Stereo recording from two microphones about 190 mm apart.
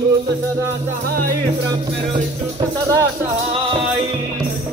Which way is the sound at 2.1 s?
25° right (ahead or behind).